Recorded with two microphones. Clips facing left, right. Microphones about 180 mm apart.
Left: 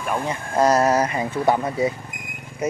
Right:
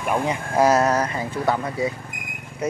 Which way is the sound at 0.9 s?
10° left (ahead or behind).